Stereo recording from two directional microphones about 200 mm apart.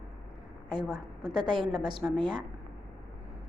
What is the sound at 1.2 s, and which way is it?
A woman's voice, 20° right (ahead or behind).